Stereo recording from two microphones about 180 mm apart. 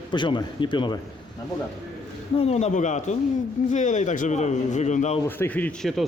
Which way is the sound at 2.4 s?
35° left (ahead or behind).